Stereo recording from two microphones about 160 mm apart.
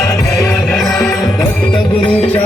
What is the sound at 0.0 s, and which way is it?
Music, 20° left (ahead or behind).